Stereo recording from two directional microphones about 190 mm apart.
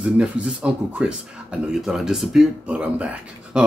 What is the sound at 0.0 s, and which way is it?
Speech, 5° right (ahead or behind).